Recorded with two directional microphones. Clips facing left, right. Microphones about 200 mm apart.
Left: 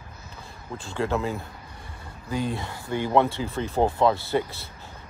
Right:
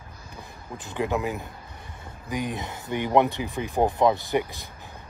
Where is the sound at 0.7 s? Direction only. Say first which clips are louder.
Even; 15° right (ahead or behind).